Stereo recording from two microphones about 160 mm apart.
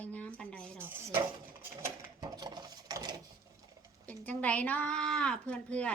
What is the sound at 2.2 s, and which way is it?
Wood, 25° right (ahead or behind).